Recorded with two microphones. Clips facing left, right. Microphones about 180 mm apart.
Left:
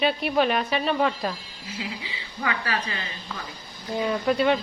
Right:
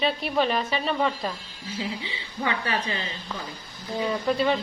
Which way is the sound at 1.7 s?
30° right (ahead or behind).